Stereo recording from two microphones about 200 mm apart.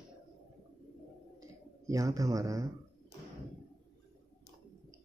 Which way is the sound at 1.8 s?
15° right (ahead or behind).